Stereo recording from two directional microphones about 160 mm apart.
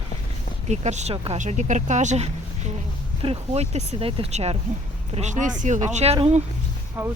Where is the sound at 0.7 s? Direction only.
45° right (ahead or behind).